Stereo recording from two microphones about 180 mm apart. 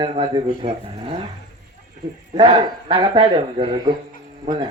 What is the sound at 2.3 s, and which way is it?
Speech, 25° right (ahead or behind).